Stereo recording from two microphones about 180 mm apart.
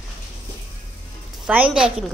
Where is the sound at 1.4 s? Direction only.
5° right (ahead or behind).